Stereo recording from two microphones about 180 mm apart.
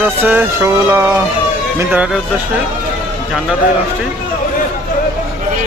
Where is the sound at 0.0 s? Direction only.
10° right (ahead or behind).